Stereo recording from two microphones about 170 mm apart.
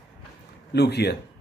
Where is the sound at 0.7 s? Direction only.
75° left (ahead or behind).